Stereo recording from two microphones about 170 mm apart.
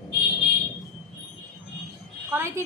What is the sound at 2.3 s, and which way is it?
Speech, 15° right (ahead or behind).